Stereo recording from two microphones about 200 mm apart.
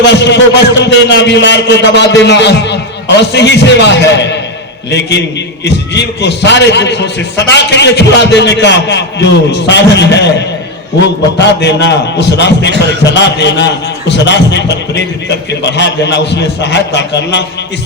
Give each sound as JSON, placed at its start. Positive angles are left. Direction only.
{"t": 0.0, "sound": "a man's voice", "side_deg": 60}
{"t": 11.3, "sound": "a man's voice", "side_deg": 60}